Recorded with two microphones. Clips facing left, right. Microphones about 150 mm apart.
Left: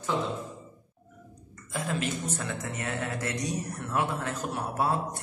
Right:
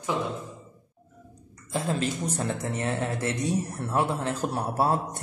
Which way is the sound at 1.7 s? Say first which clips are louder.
Right 3 dB; 30° right (ahead or behind).